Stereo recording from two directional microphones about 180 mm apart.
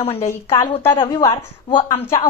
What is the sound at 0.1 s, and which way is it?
A woman's voice, 15° left (ahead or behind).